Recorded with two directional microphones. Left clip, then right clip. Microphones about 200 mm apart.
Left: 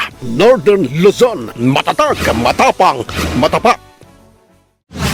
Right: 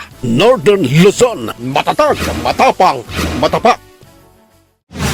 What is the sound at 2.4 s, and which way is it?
Speech, 30° left (ahead or behind).